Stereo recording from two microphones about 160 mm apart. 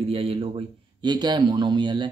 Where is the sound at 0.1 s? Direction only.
35° right (ahead or behind).